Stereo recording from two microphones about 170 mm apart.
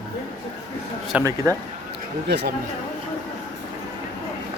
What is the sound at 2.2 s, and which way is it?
Speech, 75° right (ahead or behind).